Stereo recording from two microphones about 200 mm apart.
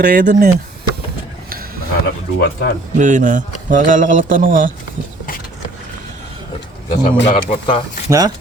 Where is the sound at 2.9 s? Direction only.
40° right (ahead or behind).